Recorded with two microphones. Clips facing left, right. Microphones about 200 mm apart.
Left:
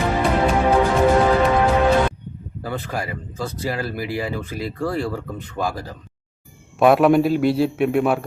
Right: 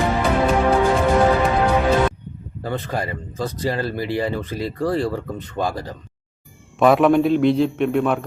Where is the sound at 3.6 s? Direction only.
5° left (ahead or behind).